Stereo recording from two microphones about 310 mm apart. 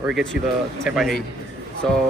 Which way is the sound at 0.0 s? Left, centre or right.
Centre.